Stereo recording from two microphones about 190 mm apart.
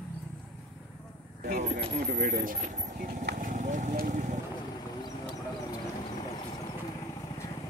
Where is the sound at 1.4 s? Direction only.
50° right (ahead or behind).